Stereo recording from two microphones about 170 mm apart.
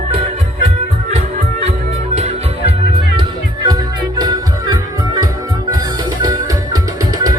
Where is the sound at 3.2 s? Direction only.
25° right (ahead or behind).